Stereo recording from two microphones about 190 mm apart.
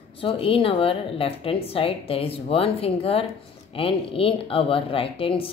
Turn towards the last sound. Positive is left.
turn(degrees=30)  # may be behind; listen again after turning